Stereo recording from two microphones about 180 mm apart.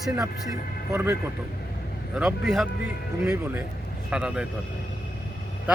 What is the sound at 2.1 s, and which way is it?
Speech, centre (ahead or behind).